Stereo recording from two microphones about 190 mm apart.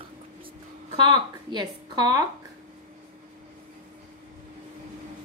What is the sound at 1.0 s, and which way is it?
A woman's voice, 25° right (ahead or behind).